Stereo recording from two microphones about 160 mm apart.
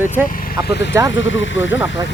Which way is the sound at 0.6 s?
90° left.